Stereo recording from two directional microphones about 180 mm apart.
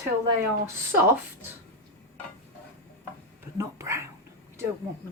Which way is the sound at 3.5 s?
15° right (ahead or behind).